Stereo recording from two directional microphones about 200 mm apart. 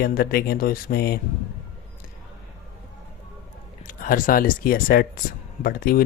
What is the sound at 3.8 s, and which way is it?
Speech, 45° left (ahead or behind).